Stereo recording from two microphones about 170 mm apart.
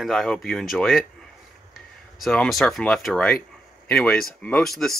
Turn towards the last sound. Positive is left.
turn(degrees=0)  # may be behind; listen again after turning